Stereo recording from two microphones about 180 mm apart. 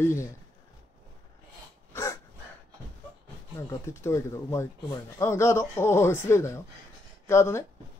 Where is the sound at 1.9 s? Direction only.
15° left (ahead or behind).